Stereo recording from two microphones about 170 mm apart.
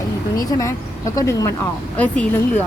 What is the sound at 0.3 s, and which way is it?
Speech, 20° left (ahead or behind).